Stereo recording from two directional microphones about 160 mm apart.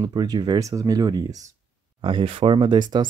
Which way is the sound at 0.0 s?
25° right (ahead or behind).